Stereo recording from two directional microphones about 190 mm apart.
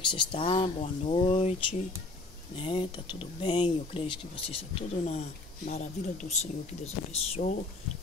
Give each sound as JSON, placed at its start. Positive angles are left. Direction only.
{"t": 0.1, "sound": "speech", "side_deg": 30}